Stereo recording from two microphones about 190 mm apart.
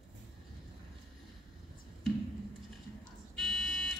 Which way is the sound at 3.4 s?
Centre (ahead or behind).